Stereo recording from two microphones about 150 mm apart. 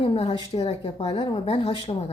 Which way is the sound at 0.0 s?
40° left (ahead or behind).